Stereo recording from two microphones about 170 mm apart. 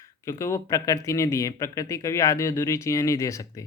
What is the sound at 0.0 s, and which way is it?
Speech, 15° left (ahead or behind).